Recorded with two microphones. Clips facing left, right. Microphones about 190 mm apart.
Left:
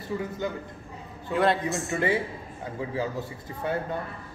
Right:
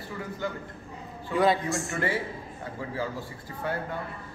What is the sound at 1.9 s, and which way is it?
Speech, 20° left (ahead or behind).